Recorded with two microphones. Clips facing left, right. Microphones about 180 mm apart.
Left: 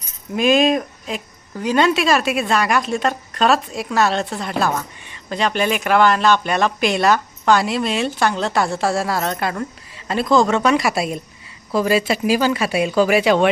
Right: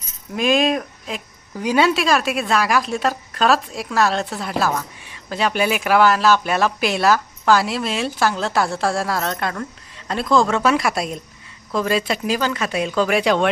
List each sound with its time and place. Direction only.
0.3 s a woman's voice: centre (ahead or behind)